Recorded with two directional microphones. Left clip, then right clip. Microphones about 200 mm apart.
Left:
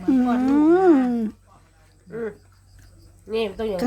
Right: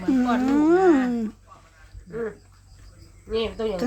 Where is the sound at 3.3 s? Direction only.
55° left (ahead or behind).